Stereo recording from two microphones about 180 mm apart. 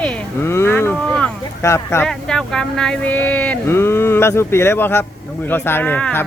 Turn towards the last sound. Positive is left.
turn(degrees=10)  # may be behind; listen again after turning